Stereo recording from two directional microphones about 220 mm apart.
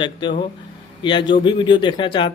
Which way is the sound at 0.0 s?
20° left (ahead or behind).